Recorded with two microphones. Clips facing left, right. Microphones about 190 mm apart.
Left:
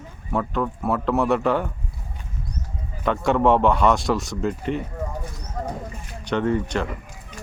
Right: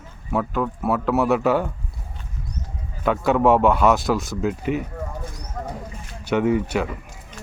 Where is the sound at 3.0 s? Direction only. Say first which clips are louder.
Right 1 dB; 5° right (ahead or behind).